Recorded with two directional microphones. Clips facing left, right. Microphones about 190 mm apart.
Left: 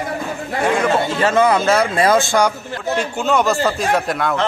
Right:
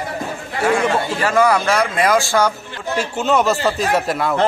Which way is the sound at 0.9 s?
25° left (ahead or behind).